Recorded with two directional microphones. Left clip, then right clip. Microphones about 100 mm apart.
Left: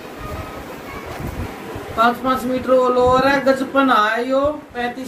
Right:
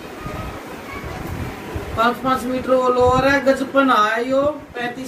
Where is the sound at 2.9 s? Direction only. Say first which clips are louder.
Left 1 dB; centre (ahead or behind).